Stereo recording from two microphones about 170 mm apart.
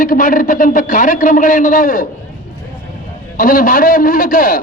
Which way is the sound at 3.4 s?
55° left (ahead or behind).